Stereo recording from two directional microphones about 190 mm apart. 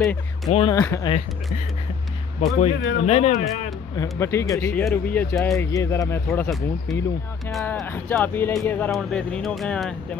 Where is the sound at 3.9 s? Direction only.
15° left (ahead or behind).